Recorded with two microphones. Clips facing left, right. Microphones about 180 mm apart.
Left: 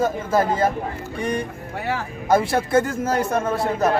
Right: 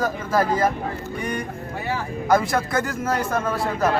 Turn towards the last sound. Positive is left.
turn(degrees=25)  # may be behind; listen again after turning